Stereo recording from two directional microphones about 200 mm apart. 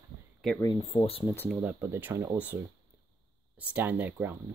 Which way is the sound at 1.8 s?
10° right (ahead or behind).